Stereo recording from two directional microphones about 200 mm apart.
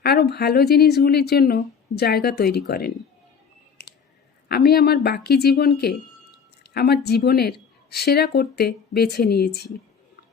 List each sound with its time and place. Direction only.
0.0 s a woman's voice: 55° left (ahead or behind)
3.8 s a sound: 55° left (ahead or behind)
4.4 s a woman's voice: 50° left (ahead or behind)